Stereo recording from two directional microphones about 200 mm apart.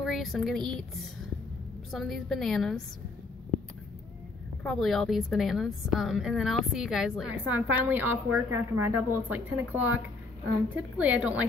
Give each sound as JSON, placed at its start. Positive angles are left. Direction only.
{"t": 0.0, "sound": "speech", "side_deg": 0}
{"t": 1.9, "sound": "a woman's voice", "side_deg": 0}
{"t": 4.6, "sound": "a woman's voice", "side_deg": 0}